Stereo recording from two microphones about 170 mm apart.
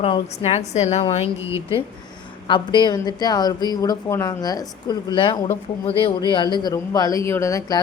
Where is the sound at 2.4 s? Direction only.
25° left (ahead or behind).